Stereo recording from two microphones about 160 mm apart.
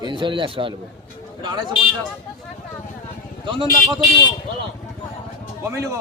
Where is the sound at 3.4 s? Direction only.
30° right (ahead or behind).